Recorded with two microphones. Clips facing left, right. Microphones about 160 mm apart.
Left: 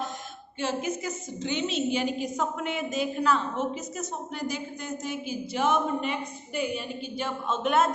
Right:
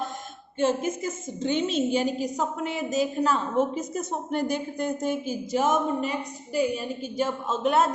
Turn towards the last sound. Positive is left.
turn(degrees=-30)  # may be behind; listen again after turning